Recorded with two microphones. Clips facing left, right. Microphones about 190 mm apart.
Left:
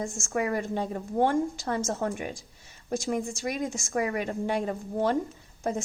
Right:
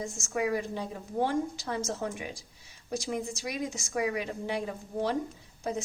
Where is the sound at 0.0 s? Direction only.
50° left (ahead or behind).